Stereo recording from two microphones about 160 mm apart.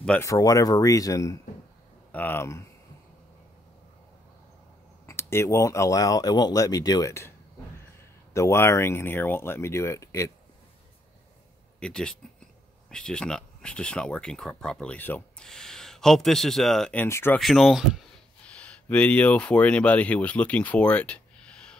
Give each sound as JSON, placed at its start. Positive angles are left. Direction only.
{"t": 0.0, "sound": "speech", "side_deg": 10}
{"t": 0.3, "sound": "speech", "side_deg": 20}
{"t": 5.0, "sound": "speech", "side_deg": 15}
{"t": 11.8, "sound": "speech", "side_deg": 5}
{"t": 17.4, "sound": "speech", "side_deg": 0}